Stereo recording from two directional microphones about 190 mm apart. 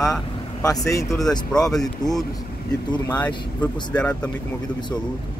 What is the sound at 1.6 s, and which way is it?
Speech, centre (ahead or behind).